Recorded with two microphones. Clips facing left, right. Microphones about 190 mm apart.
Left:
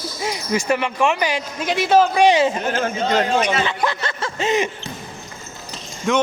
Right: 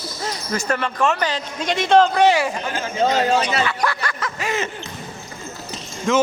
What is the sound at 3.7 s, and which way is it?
Snicker, 20° left (ahead or behind).